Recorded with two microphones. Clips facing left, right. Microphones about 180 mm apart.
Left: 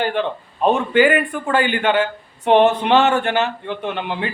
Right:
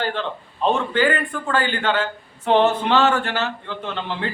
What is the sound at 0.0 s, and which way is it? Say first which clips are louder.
A man's voice: left 5 dB; 15° left (ahead or behind).